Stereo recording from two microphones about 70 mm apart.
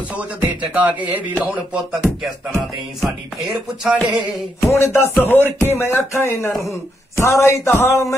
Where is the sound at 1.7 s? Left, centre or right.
Centre.